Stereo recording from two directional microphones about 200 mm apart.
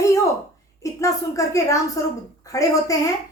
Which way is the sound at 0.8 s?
15° left (ahead or behind).